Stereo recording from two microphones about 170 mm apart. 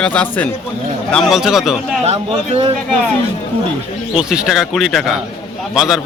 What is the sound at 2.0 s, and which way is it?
Speech, 40° right (ahead or behind).